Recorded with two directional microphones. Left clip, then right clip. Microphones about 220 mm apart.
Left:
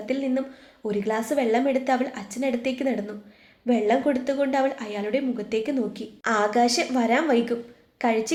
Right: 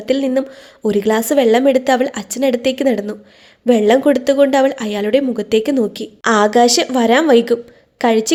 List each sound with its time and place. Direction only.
0.0 s speech: 45° right (ahead or behind)